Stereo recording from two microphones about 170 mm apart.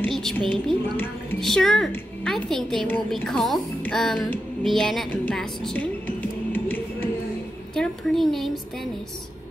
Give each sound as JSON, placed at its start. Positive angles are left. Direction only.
{"t": 0.0, "sound": "a woman's voice", "side_deg": 5}
{"t": 5.1, "sound": "music", "side_deg": 5}
{"t": 7.7, "sound": "a sound", "side_deg": 5}